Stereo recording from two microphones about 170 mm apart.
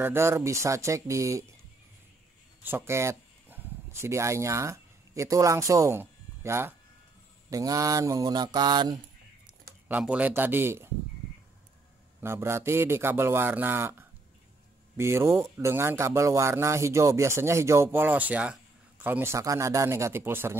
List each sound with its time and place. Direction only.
0.0 s a man's voice: 15° right (ahead or behind)
2.6 s speech: 15° right (ahead or behind)
7.4 s mantra: 20° right (ahead or behind)
9.8 s a man's voice: 10° right (ahead or behind)
12.2 s a man's voice: 15° right (ahead or behind)